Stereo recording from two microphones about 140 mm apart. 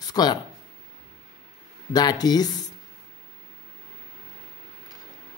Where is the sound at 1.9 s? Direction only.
30° left (ahead or behind).